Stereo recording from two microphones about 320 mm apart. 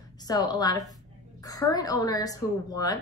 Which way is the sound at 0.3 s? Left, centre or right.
Centre.